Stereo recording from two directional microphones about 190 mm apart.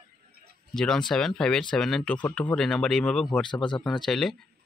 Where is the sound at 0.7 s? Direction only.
Centre (ahead or behind).